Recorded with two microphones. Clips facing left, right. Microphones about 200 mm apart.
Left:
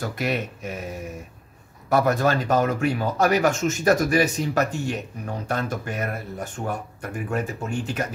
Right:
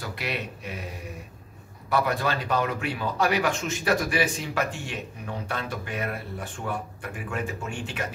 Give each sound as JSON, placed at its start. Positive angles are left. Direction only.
{"t": 0.0, "sound": "speech", "side_deg": 45}
{"t": 1.9, "sound": "speech", "side_deg": 45}